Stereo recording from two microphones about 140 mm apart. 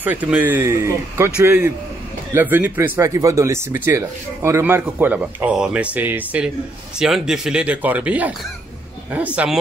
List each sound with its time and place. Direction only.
0.0 s speech: 10° right (ahead or behind)